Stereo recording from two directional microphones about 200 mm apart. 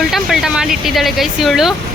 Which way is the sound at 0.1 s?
Centre (ahead or behind).